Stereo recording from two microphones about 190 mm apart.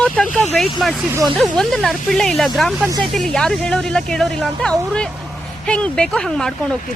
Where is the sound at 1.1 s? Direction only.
15° right (ahead or behind).